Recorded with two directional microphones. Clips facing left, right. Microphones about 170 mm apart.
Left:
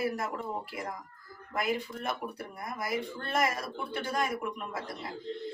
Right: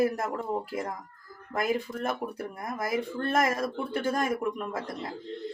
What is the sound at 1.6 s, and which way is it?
Speech, 45° right (ahead or behind).